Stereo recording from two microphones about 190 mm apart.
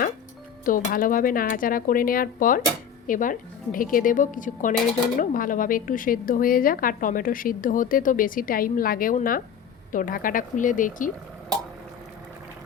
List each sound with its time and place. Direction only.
0.6 s speech: 45° left (ahead or behind)